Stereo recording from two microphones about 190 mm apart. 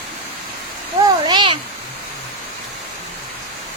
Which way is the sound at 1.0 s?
25° right (ahead or behind).